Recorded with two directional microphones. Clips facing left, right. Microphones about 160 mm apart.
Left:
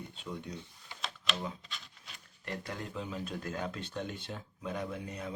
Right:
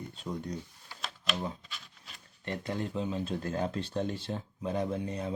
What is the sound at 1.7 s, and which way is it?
Rub, centre (ahead or behind).